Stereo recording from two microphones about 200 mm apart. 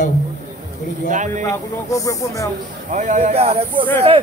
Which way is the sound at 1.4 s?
15° left (ahead or behind).